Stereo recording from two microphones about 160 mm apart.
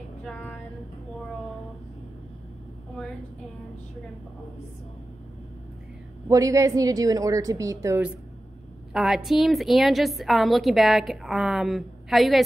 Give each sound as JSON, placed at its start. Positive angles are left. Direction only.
{"t": 0.2, "sound": "a sound", "side_deg": 5}
{"t": 6.2, "sound": "a woman's voice", "side_deg": -20}
{"t": 8.9, "sound": "a woman's voice", "side_deg": 0}